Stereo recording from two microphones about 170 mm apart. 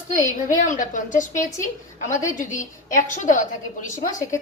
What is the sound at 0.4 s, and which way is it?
A woman's voice, 50° left (ahead or behind).